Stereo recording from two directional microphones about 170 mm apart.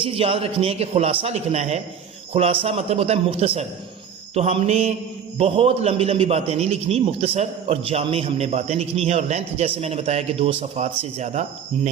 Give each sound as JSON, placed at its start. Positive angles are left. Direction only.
{"t": 0.0, "sound": "a man's voice", "side_deg": -35}